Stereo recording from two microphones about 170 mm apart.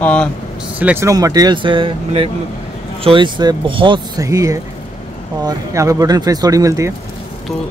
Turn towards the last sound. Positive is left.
turn(degrees=-20)  # may be behind; listen again after turning